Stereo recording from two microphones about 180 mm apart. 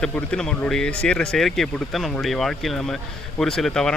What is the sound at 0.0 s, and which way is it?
Speech, 5° left (ahead or behind).